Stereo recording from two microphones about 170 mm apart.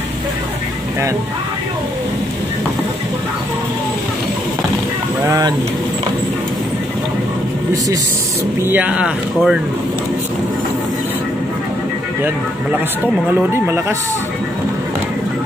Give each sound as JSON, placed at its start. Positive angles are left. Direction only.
{"t": 5.2, "sound": "speech", "side_deg": -20}
{"t": 8.6, "sound": "speech", "side_deg": -10}
{"t": 13.3, "sound": "speech", "side_deg": -15}